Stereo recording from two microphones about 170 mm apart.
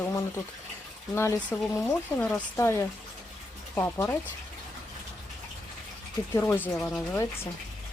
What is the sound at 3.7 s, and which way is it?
Speech, 15° left (ahead or behind).